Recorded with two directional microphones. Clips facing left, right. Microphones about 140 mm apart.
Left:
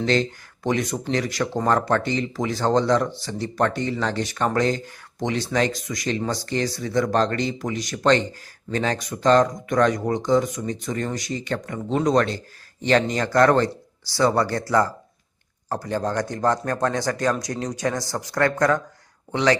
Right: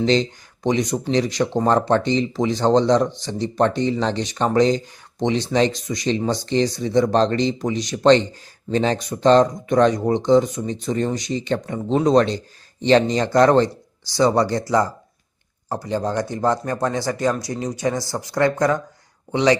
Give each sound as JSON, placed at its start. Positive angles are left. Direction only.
{"t": 0.0, "sound": "a man's voice", "side_deg": -20}